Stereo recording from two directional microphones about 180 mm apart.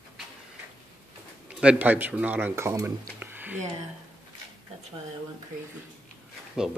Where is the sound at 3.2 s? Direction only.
10° right (ahead or behind).